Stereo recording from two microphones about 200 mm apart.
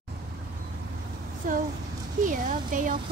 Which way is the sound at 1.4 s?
45° right (ahead or behind).